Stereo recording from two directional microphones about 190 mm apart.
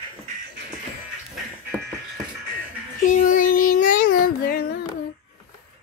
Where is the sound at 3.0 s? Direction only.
40° left (ahead or behind).